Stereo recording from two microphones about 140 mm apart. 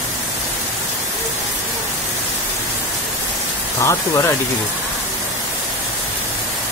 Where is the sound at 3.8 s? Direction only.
20° left (ahead or behind).